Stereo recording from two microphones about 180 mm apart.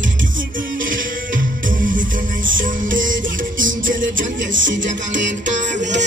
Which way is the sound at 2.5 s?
50° right (ahead or behind).